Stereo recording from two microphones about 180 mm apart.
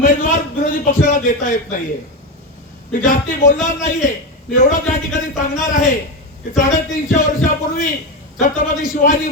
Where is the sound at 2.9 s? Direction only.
50° left (ahead or behind).